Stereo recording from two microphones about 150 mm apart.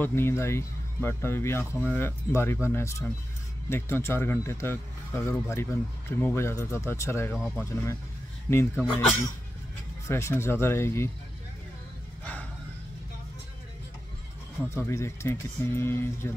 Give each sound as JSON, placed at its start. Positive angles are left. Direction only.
{"t": 0.0, "sound": "speech", "side_deg": 15}
{"t": 10.0, "sound": "speech", "side_deg": 20}
{"t": 14.8, "sound": "speech", "side_deg": 20}